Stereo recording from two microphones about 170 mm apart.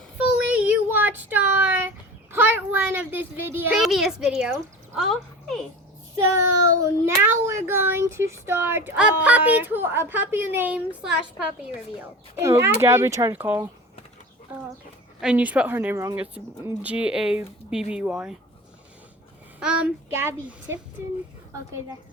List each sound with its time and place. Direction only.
0.3 s child singing: 10° right (ahead or behind)
2.3 s a child's voice: 10° right (ahead or behind)
6.6 s speech: 15° right (ahead or behind)
12.4 s speech: 15° right (ahead or behind)
15.2 s speech: 5° right (ahead or behind)
19.5 s speech: 5° right (ahead or behind)